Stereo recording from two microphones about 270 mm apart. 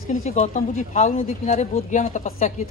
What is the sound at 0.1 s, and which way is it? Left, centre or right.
Speech, left.